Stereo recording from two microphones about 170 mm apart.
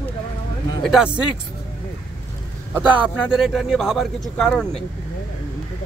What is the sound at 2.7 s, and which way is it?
A man's voice, 5° right (ahead or behind).